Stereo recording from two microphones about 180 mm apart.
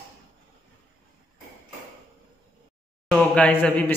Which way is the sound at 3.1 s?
10° left (ahead or behind).